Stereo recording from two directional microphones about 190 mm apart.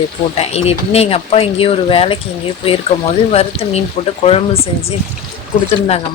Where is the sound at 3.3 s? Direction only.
35° left (ahead or behind).